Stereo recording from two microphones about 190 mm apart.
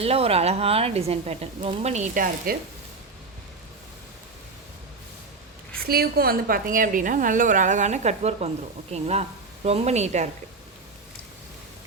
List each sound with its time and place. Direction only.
0.0 s speech: 30° right (ahead or behind)
5.9 s a woman's voice: 55° right (ahead or behind); by 10.2 s 35° right (ahead or behind)